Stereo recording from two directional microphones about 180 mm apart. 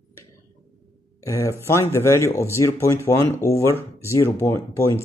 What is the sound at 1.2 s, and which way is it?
Speech, 15° left (ahead or behind).